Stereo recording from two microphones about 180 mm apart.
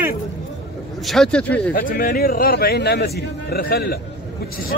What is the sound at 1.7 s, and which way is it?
A man's voice, 55° left (ahead or behind).